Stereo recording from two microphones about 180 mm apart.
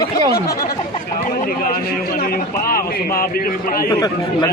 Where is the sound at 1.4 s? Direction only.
55° left (ahead or behind).